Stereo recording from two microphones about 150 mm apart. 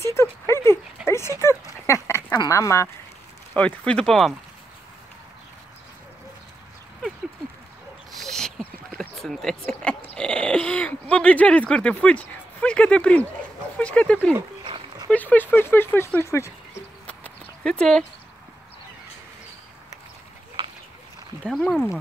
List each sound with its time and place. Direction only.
0.0 s a sound: 20° left (ahead or behind)
3.5 s speech: 10° left (ahead or behind)
8.2 s speech: 5° left (ahead or behind)
14.6 s dog: 35° right (ahead or behind)
15.0 s speech: 10° left (ahead or behind)
17.0 s horse: 10° left (ahead or behind)
21.5 s speech: centre (ahead or behind)